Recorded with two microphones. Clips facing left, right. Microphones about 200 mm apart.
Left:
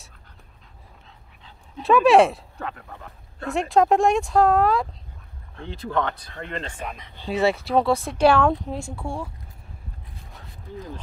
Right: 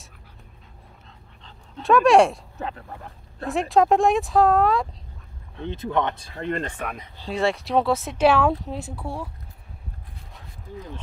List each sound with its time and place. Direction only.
1.4 s speech: centre (ahead or behind)
3.4 s speech: centre (ahead or behind)
5.6 s speech: 20° right (ahead or behind)
6.6 s speech: 60° right (ahead or behind)
7.2 s speech: centre (ahead or behind)